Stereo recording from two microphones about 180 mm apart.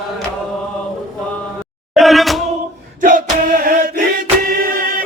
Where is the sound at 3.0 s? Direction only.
50° right (ahead or behind).